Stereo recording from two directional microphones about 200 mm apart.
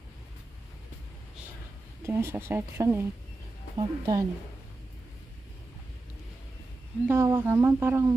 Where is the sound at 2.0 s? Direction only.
15° right (ahead or behind).